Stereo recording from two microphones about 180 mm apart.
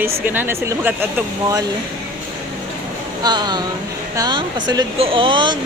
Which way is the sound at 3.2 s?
25° right (ahead or behind).